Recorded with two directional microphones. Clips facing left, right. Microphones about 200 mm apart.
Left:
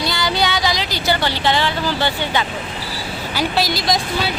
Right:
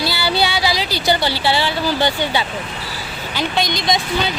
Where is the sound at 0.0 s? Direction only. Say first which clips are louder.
Right 1 dB; 5° right (ahead or behind).